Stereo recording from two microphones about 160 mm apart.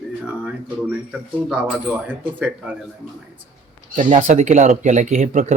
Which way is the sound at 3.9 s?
50° right (ahead or behind).